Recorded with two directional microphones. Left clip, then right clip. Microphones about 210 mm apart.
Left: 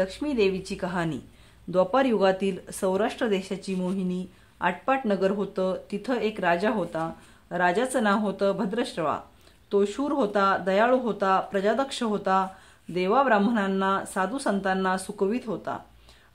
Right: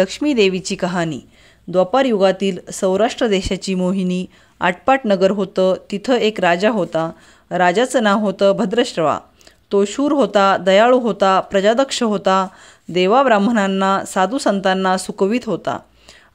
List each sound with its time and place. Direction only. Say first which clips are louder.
0.0 s speech: right 9 dB; 30° right (ahead or behind)